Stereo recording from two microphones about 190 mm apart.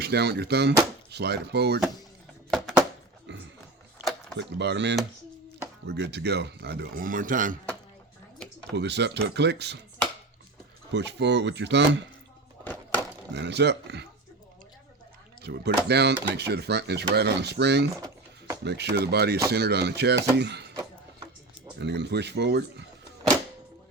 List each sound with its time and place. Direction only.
0.0 s speech: 60° right (ahead or behind)
2.5 s a sound: centre (ahead or behind)
3.3 s music: 70° right (ahead or behind)
4.4 s speech: 65° right (ahead or behind); by 7.6 s 45° right (ahead or behind)
8.7 s speech: 65° right (ahead or behind)
10.9 s speech: 65° right (ahead or behind)
13.3 s speech: 65° right (ahead or behind)
15.4 s speech: 60° right (ahead or behind)
18.0 s a sound: 15° right (ahead or behind)
18.6 s speech: 65° right (ahead or behind)
21.8 s speech: 65° right (ahead or behind)